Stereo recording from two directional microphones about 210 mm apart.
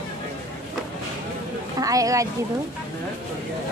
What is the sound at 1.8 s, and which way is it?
Speech, 15° right (ahead or behind).